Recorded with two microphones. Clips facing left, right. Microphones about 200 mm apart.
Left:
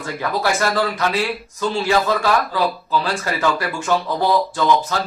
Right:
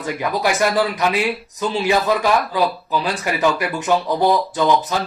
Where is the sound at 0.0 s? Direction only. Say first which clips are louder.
Right 1 dB; 15° right (ahead or behind).